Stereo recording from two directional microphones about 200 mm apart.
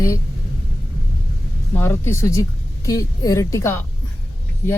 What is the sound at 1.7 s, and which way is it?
Speech, 10° left (ahead or behind).